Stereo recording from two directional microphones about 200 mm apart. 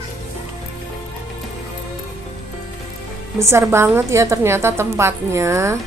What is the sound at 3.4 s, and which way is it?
A woman's voice, 15° right (ahead or behind).